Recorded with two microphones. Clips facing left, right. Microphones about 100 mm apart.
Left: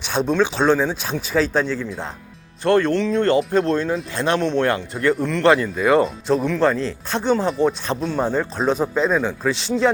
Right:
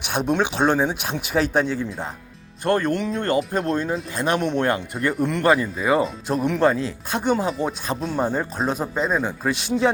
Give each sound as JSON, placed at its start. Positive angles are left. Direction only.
{"t": 0.0, "sound": "speech", "side_deg": -15}
{"t": 2.7, "sound": "speech", "side_deg": -15}
{"t": 5.5, "sound": "speech", "side_deg": -5}